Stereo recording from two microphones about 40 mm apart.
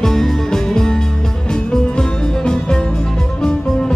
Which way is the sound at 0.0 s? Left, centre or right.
Centre.